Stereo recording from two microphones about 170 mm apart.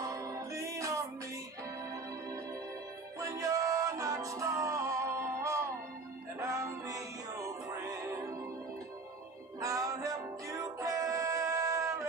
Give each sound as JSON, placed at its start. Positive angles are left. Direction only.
{"t": 0.0, "sound": "music", "side_deg": -20}
{"t": 3.2, "sound": "music", "side_deg": -20}
{"t": 9.6, "sound": "music", "side_deg": -20}